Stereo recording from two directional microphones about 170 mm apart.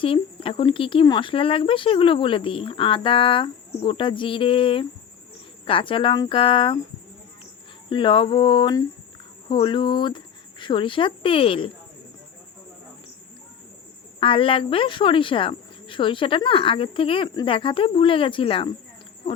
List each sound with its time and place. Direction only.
0.0 s speech: 30° left (ahead or behind)
7.9 s cricket: 30° left (ahead or behind)
9.5 s speech: 30° left (ahead or behind)
14.2 s speech: 30° left (ahead or behind)